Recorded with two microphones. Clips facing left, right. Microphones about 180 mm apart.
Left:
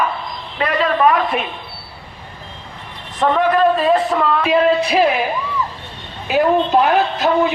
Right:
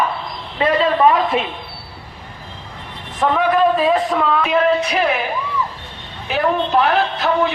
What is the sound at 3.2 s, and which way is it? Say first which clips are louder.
A man's voice: left 1 dB; 5° right (ahead or behind).